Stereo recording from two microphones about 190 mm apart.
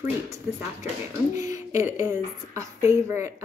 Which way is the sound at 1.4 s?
15° right (ahead or behind).